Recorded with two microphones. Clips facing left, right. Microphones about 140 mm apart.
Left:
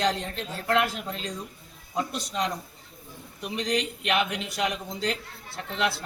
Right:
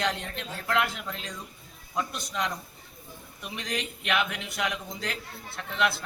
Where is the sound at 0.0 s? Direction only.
35° left (ahead or behind).